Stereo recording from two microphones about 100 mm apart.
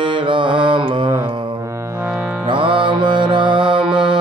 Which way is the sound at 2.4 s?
55° right (ahead or behind).